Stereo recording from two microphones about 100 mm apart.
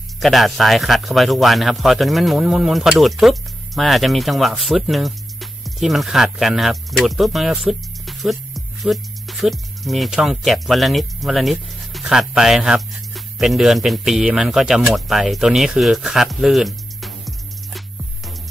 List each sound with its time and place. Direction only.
0.2 s speech: centre (ahead or behind)
17.7 s music: centre (ahead or behind)